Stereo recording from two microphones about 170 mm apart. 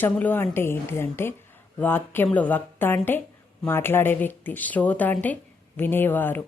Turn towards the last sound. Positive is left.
turn(degrees=10)  # may be behind; listen again after turning